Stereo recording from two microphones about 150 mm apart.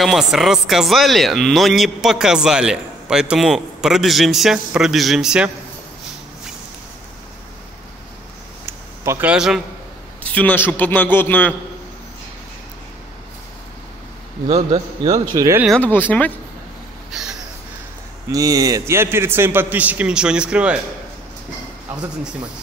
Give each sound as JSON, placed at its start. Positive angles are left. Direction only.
{"t": 0.0, "sound": "speech", "side_deg": 0}
{"t": 8.6, "sound": "a sound", "side_deg": -15}
{"t": 10.2, "sound": "a man's voice", "side_deg": 10}
{"t": 15.3, "sound": "speech", "side_deg": -25}
{"t": 15.8, "sound": "a man's voice", "side_deg": 10}
{"t": 17.1, "sound": "a sound", "side_deg": -5}
{"t": 18.3, "sound": "a man's voice", "side_deg": -25}